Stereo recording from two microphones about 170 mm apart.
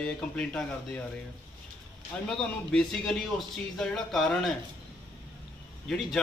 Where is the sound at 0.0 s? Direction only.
5° left (ahead or behind).